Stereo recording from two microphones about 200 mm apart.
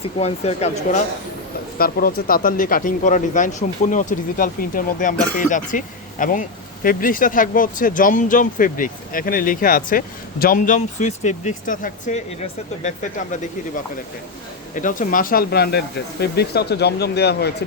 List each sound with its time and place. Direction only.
0.2 s speech: 30° left (ahead or behind)
1.8 s speech: 50° left (ahead or behind)